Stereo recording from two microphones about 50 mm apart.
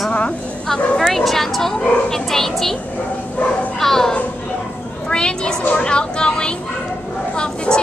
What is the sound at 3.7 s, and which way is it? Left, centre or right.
Speech, centre.